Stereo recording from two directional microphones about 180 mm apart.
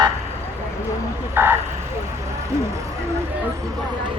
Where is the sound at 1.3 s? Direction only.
10° right (ahead or behind).